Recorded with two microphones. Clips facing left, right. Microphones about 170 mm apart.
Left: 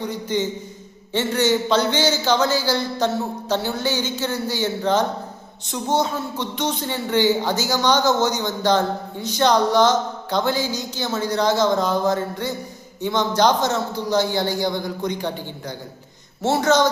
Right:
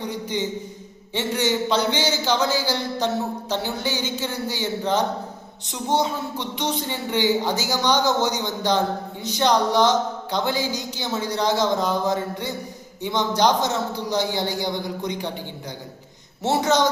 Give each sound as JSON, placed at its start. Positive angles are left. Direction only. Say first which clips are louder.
{"t": 0.1, "sound": "speech", "louder": "left 2 dB", "side_deg": -15}
{"t": 16.5, "sound": "speech", "louder": "left 2 dB", "side_deg": -15}